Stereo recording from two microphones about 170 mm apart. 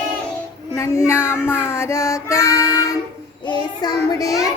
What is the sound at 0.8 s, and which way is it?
Child singing, 15° left (ahead or behind).